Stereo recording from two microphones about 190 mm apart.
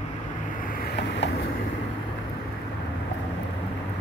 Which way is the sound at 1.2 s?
65° left (ahead or behind).